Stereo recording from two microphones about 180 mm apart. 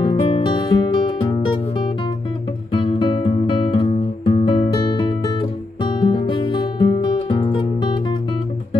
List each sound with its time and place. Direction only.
0.0 s music: 25° left (ahead or behind)
2.7 s music: 30° left (ahead or behind)